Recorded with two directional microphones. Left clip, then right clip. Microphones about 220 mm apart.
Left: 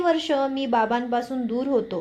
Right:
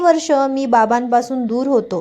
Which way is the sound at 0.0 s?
40° right (ahead or behind).